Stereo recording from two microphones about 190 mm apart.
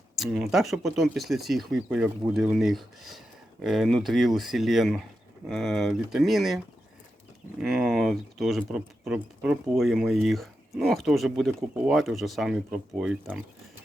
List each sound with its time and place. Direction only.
0.2 s speech: centre (ahead or behind)
7.6 s speech: centre (ahead or behind)